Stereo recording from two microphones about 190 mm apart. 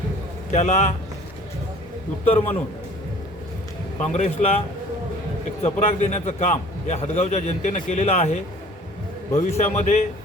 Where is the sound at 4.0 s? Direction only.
35° left (ahead or behind).